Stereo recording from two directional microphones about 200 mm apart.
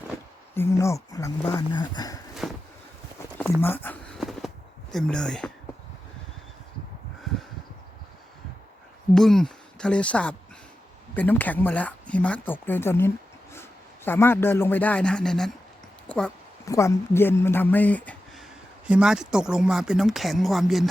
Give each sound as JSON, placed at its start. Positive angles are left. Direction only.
{"t": 0.5, "sound": "speech", "side_deg": 10}
{"t": 2.4, "sound": "boat", "side_deg": 0}
{"t": 3.6, "sound": "a sound", "side_deg": 10}
{"t": 9.1, "sound": "speech", "side_deg": 0}
{"t": 16.0, "sound": "a sound", "side_deg": 5}
{"t": 16.6, "sound": "speech", "side_deg": 15}
{"t": 18.9, "sound": "speech", "side_deg": -5}